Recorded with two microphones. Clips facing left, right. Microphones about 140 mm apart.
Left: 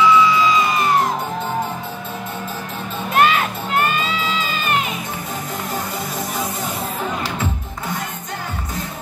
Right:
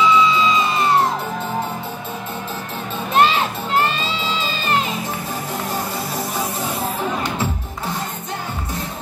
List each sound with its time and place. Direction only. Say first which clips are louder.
0.0 s music: left 1 dB; 20° right (ahead or behind)
3.2 s music: even; 25° right (ahead or behind)